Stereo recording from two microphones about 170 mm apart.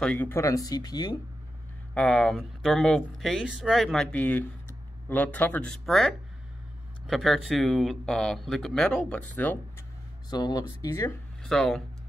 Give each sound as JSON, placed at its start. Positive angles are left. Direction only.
{"t": 0.0, "sound": "speech", "side_deg": 10}
{"t": 2.0, "sound": "speech", "side_deg": 0}
{"t": 10.3, "sound": "speech", "side_deg": 25}
{"t": 11.4, "sound": "speech", "side_deg": 0}